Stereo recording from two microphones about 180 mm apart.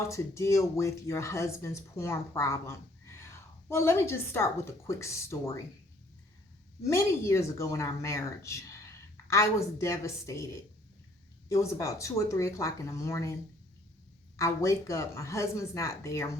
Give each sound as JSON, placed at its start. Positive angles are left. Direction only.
{"t": 0.1, "sound": "speech", "side_deg": 15}
{"t": 6.8, "sound": "speech", "side_deg": 15}
{"t": 14.3, "sound": "speech", "side_deg": 15}